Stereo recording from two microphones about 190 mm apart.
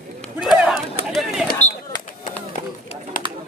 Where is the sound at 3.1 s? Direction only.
45° left (ahead or behind).